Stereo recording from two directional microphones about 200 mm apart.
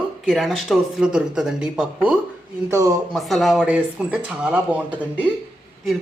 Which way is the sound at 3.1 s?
Centre (ahead or behind).